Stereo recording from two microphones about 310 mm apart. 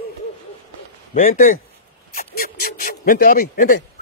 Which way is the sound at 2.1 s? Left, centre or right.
Left.